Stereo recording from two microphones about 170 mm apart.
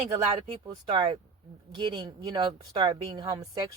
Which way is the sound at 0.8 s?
25° right (ahead or behind).